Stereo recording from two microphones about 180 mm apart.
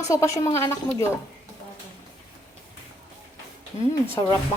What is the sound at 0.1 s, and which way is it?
Speech, 15° left (ahead or behind).